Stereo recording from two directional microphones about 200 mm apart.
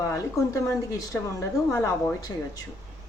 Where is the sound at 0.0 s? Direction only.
15° left (ahead or behind).